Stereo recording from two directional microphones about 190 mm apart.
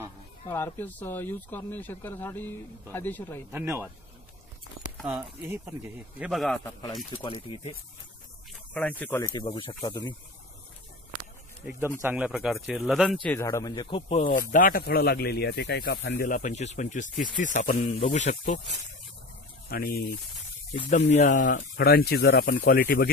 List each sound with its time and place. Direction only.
0.5 s speech: 10° left (ahead or behind)
3.5 s speech: 10° right (ahead or behind)
5.7 s speech: 10° right (ahead or behind)
7.2 s speech: 25° left (ahead or behind)
8.7 s speech: 10° left (ahead or behind)
9.3 s speech: 25° left (ahead or behind)
12.0 s speech: 10° right (ahead or behind); by 14.2 s 25° left (ahead or behind)
14.2 s speech: 45° left (ahead or behind)
16.3 s speech: 40° left (ahead or behind)
19.7 s speech: 50° left (ahead or behind)
21.1 s speech: 40° left (ahead or behind)